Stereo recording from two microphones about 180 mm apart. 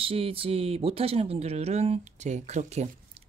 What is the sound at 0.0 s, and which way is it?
Speech, 30° right (ahead or behind).